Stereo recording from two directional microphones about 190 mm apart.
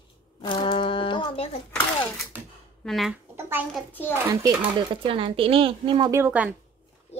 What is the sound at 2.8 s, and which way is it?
Speech, centre (ahead or behind).